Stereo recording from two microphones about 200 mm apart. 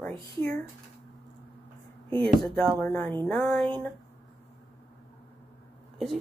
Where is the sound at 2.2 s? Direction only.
5° left (ahead or behind).